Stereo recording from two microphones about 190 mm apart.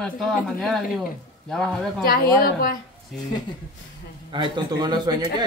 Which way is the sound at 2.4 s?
50° left (ahead or behind).